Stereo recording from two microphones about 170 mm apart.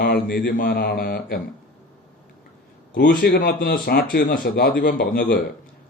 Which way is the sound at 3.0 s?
65° left (ahead or behind).